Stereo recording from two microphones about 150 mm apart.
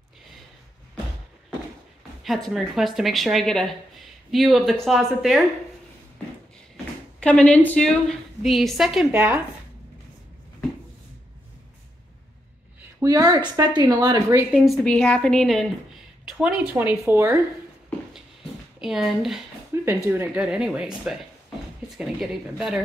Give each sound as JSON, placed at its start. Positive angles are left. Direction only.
{"t": 2.2, "sound": "speech", "side_deg": 0}
{"t": 7.2, "sound": "speech", "side_deg": 5}
{"t": 9.1, "sound": "speech", "side_deg": -15}
{"t": 13.0, "sound": "speech", "side_deg": -25}
{"t": 14.5, "sound": "speech", "side_deg": 0}
{"t": 18.8, "sound": "speech", "side_deg": 0}
{"t": 19.7, "sound": "a sound", "side_deg": -15}
{"t": 20.1, "sound": "speech", "side_deg": -10}